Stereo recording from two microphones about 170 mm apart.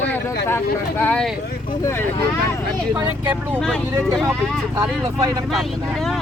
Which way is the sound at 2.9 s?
10° right (ahead or behind).